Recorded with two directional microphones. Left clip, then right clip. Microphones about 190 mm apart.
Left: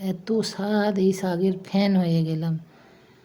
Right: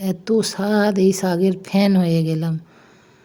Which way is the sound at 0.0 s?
25° right (ahead or behind).